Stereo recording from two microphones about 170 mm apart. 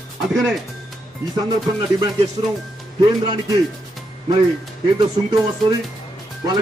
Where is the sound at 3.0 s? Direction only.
25° right (ahead or behind).